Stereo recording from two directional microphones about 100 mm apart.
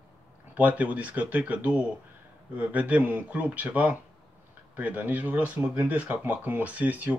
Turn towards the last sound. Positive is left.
turn(degrees=-15)  # may be behind; listen again after turning